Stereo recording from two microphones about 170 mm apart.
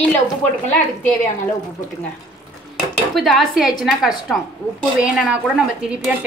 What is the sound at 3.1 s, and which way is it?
A woman's voice, centre (ahead or behind).